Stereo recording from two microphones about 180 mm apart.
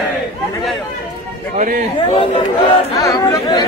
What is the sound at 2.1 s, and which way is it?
Speech, 30° left (ahead or behind).